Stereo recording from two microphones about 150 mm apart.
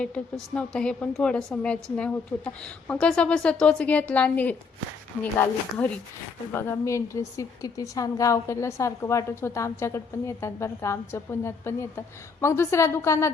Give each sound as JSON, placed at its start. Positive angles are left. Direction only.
{"t": 0.0, "sound": "a woman's voice", "side_deg": 5}